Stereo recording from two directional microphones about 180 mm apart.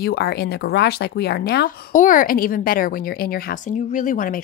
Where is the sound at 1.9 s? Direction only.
45° left (ahead or behind).